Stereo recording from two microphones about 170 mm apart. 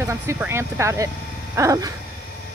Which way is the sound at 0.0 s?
15° right (ahead or behind).